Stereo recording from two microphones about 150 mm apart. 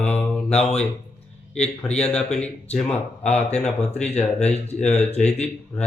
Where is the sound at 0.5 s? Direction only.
45° left (ahead or behind).